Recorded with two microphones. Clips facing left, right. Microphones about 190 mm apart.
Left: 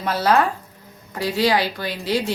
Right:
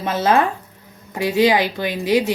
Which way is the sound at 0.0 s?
20° right (ahead or behind).